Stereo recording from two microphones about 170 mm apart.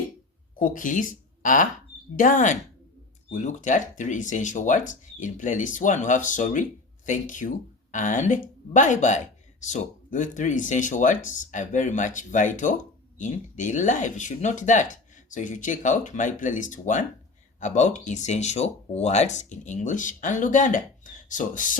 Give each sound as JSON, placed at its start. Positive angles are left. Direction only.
{"t": 0.6, "sound": "speech", "side_deg": 50}